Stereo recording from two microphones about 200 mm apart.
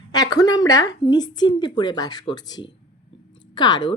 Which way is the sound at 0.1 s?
20° left (ahead or behind).